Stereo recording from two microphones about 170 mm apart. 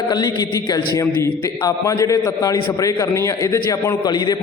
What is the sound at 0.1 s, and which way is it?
A man's voice, 25° left (ahead or behind).